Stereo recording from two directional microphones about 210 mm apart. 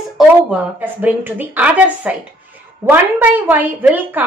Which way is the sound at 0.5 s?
10° right (ahead or behind).